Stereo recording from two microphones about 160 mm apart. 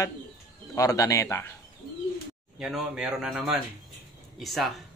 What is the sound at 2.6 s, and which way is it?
Speech, 5° right (ahead or behind).